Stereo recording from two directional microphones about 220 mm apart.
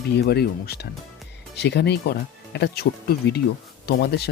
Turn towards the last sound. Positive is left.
turn(degrees=45)  # may be behind; listen again after turning